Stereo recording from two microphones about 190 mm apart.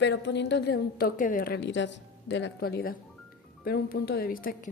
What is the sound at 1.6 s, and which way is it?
A woman's voice, 70° left (ahead or behind).